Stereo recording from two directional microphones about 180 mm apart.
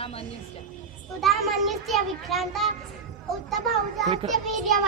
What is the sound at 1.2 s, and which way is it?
A child's voice, centre (ahead or behind).